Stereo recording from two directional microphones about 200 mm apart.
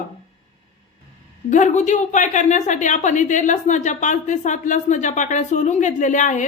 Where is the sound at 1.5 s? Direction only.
35° left (ahead or behind).